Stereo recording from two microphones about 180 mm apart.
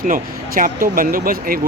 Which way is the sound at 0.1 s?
50° right (ahead or behind).